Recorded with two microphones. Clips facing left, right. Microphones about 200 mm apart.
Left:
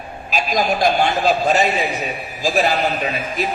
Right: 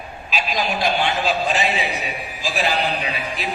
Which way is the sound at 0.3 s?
45° left (ahead or behind).